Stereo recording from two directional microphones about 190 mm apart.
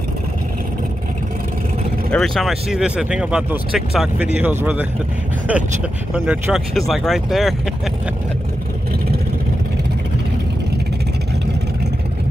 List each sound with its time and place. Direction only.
2.1 s speech: centre (ahead or behind)